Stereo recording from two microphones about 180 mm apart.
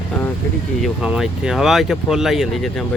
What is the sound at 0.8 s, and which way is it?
Speech, 5° right (ahead or behind).